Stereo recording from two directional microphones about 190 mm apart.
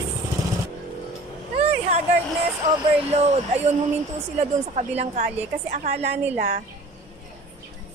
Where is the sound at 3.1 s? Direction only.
35° right (ahead or behind).